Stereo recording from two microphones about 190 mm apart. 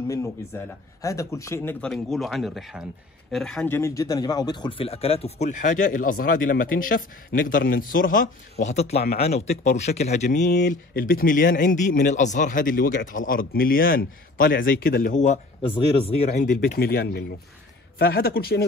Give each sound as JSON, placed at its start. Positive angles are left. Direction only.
{"t": 0.1, "sound": "a man's voice", "side_deg": 15}
{"t": 16.3, "sound": "speech", "side_deg": 50}